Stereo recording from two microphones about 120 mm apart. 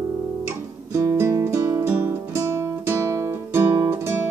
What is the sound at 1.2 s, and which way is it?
Music, 25° right (ahead or behind).